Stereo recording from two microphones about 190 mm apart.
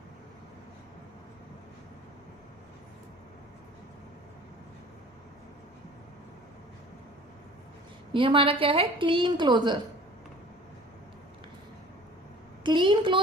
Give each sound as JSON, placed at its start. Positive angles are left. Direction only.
{"t": 8.1, "sound": "a woman's voice", "side_deg": -25}
{"t": 12.6, "sound": "a woman's voice", "side_deg": -25}